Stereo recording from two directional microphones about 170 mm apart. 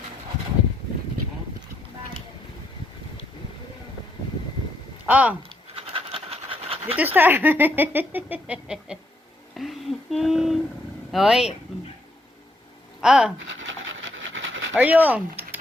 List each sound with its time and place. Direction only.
5.0 s speech: 10° right (ahead or behind)
5.5 s pant: 30° right (ahead or behind)
6.9 s speech: 10° right (ahead or behind)
9.6 s a sound: centre (ahead or behind)
11.1 s speech: centre (ahead or behind)
13.0 s speech: 5° right (ahead or behind)
13.5 s dog: 90° right
14.7 s speech: 10° right (ahead or behind)